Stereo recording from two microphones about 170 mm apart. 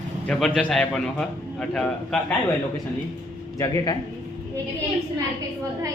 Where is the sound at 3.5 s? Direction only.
20° left (ahead or behind).